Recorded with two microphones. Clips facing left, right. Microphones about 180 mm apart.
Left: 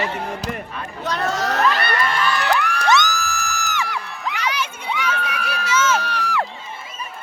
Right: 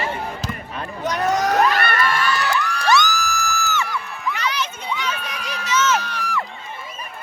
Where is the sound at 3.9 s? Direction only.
70° left (ahead or behind).